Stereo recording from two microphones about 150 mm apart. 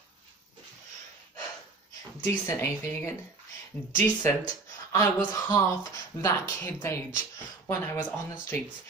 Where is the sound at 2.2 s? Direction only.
20° left (ahead or behind).